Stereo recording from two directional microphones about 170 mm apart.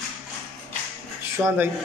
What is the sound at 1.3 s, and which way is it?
Speech, 15° right (ahead or behind).